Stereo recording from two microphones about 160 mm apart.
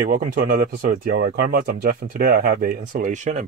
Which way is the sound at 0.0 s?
60° right (ahead or behind).